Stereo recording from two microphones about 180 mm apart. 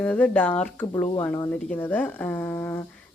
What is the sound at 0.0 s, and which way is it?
Speech, 10° left (ahead or behind).